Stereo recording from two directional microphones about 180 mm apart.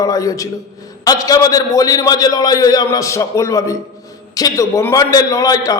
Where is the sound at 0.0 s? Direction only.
20° left (ahead or behind).